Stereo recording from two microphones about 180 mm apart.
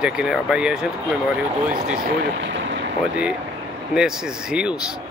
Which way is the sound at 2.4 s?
85° right.